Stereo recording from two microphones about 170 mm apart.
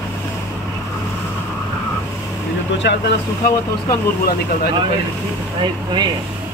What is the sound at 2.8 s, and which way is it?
Speech, 90° left.